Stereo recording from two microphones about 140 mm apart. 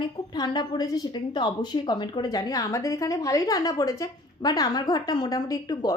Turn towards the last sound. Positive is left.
turn(degrees=30)  # may be behind; listen again after turning